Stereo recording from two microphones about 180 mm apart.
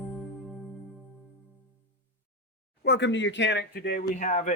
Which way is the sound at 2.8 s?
75° left (ahead or behind).